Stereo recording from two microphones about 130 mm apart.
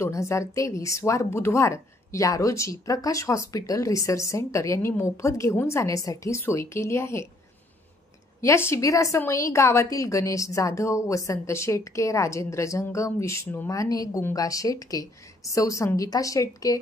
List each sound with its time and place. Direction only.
0.0 s a woman's voice: 20° left (ahead or behind)
8.4 s a woman's voice: 20° left (ahead or behind)